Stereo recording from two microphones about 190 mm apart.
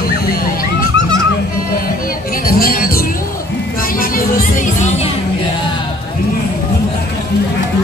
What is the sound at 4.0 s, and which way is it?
Music, 45° left (ahead or behind).